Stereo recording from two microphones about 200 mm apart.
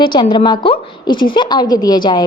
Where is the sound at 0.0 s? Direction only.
25° left (ahead or behind).